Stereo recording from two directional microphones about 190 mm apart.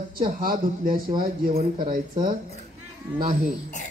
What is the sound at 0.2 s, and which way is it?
Speech, 50° right (ahead or behind).